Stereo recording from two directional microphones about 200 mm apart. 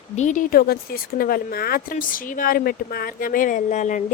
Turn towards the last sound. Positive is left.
turn(degrees=40)  # may be behind; listen again after turning